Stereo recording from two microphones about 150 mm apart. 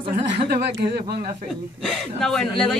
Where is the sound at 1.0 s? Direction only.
90° right.